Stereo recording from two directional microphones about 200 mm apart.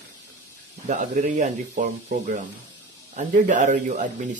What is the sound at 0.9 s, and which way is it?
Speech, 40° right (ahead or behind).